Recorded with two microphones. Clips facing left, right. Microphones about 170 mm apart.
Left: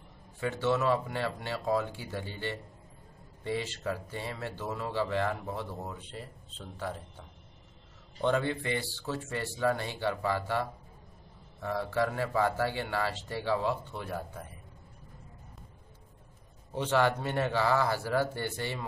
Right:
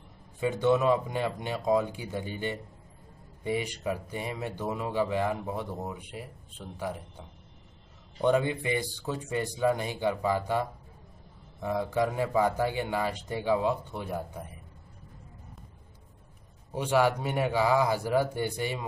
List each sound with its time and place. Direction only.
0.4 s speech: 15° right (ahead or behind)
16.7 s speech: 10° right (ahead or behind)